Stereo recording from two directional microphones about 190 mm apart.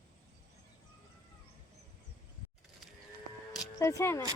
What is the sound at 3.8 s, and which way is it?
Speech, 15° left (ahead or behind).